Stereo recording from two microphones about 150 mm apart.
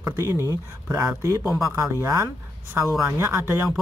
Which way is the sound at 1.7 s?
20° right (ahead or behind).